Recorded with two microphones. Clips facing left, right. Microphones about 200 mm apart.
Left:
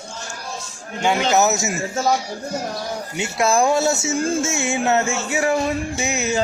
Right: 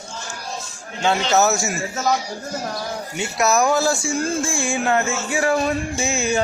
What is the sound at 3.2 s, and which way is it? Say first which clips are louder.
Speech: left 1 dB; 25° left (ahead or behind).